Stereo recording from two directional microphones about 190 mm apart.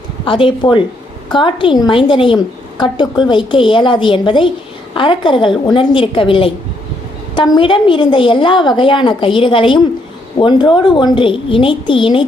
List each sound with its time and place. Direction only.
0.3 s a woman's voice: 25° left (ahead or behind)